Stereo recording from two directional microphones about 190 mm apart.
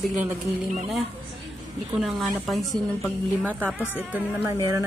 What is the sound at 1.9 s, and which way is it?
Speech, centre (ahead or behind).